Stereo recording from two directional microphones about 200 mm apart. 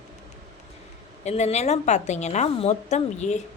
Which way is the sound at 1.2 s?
35° left (ahead or behind).